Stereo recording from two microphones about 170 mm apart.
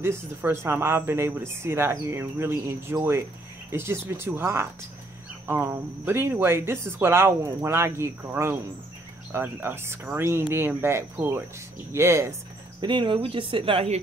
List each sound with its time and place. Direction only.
0.0 s speech: 15° right (ahead or behind)
12.8 s speech: 30° right (ahead or behind)